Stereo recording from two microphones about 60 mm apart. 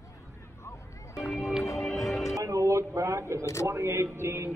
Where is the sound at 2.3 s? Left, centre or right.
Right.